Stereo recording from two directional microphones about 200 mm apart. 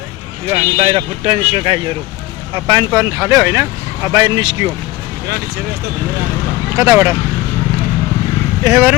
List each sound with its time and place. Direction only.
0.4 s speech: 25° right (ahead or behind)
6.7 s speech: 15° right (ahead or behind)
8.6 s speech: 15° right (ahead or behind)